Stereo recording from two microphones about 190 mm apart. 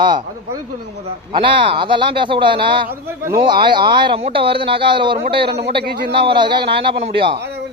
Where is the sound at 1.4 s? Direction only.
25° right (ahead or behind).